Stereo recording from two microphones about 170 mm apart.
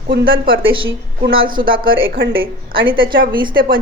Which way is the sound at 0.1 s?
80° right.